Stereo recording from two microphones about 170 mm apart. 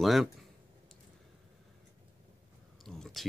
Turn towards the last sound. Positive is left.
turn(degrees=0)  # may be behind; listen again after turning